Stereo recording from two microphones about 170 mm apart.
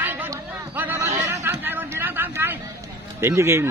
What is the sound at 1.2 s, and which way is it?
Chatter, 10° right (ahead or behind).